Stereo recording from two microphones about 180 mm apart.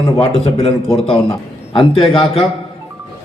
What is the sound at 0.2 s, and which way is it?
Speech, 35° left (ahead or behind).